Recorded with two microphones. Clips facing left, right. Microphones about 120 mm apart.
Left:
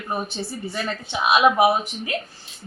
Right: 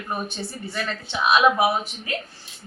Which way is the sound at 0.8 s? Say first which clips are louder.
Even; 15° left (ahead or behind).